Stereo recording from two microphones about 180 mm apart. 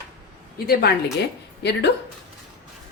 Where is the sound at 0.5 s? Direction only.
60° left (ahead or behind).